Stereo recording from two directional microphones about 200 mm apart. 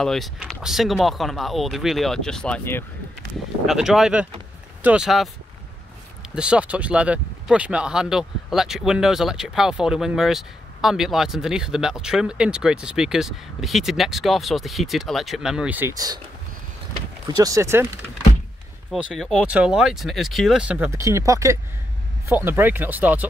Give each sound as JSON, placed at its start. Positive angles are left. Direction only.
{"t": 0.0, "sound": "speech", "side_deg": 0}
{"t": 3.6, "sound": "speech", "side_deg": 0}
{"t": 6.3, "sound": "speech", "side_deg": -5}
{"t": 17.3, "sound": "speech", "side_deg": -15}
{"t": 18.9, "sound": "speech", "side_deg": 0}